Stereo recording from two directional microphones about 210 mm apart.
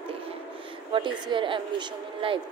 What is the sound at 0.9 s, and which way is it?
Speech, 25° right (ahead or behind).